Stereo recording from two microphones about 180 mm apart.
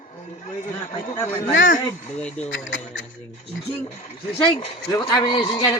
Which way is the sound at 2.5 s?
90° left.